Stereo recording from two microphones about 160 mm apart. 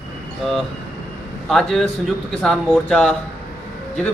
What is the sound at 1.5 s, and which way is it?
A man's voice, centre (ahead or behind).